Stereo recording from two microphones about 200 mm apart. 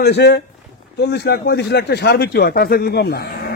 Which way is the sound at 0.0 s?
55° left (ahead or behind).